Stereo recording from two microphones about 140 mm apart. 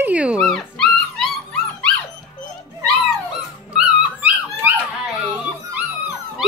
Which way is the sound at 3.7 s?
10° right (ahead or behind).